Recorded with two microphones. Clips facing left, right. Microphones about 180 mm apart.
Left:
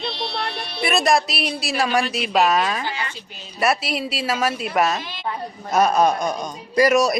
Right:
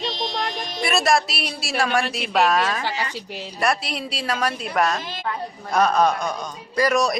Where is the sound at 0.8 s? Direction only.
Centre (ahead or behind).